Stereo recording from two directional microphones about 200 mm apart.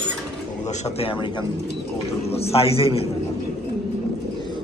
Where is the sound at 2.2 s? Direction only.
30° left (ahead or behind).